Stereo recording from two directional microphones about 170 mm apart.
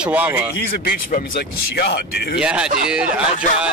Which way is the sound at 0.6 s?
65° left (ahead or behind).